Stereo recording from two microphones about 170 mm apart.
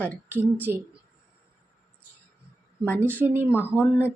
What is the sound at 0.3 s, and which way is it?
Speech, 10° right (ahead or behind).